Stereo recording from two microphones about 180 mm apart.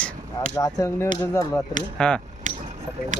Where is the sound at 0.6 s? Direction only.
15° left (ahead or behind).